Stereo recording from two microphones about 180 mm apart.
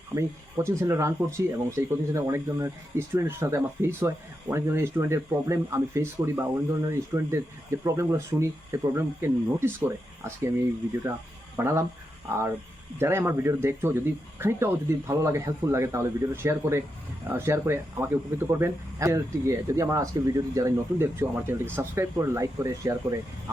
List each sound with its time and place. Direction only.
0.1 s speech: 15° right (ahead or behind)
11.5 s speech: 15° right (ahead or behind)